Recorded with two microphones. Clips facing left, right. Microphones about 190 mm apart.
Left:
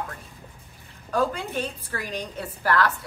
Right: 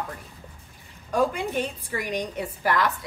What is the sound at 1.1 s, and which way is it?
Speech, 15° right (ahead or behind).